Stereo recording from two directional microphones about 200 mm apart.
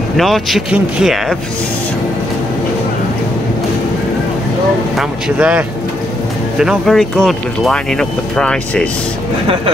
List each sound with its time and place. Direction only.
0.2 s speech: centre (ahead or behind)
4.9 s speech: 5° right (ahead or behind)